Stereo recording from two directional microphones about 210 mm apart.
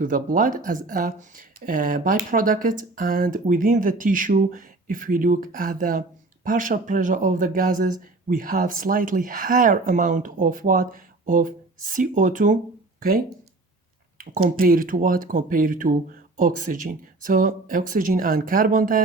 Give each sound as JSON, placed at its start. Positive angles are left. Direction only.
{"t": 0.0, "sound": "speech", "side_deg": -40}